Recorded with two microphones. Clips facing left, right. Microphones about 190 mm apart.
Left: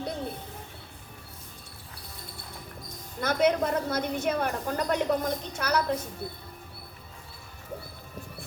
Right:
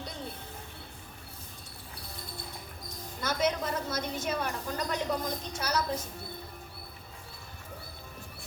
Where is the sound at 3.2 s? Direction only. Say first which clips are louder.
Left 6 dB; 60° left (ahead or behind).